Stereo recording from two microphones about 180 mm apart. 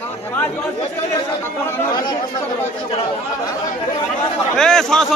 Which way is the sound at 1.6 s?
15° left (ahead or behind).